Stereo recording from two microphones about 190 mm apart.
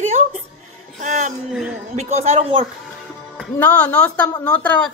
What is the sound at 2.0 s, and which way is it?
Speech, 35° right (ahead or behind).